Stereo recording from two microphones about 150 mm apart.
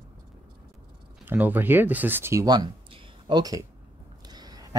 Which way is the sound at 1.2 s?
10° right (ahead or behind).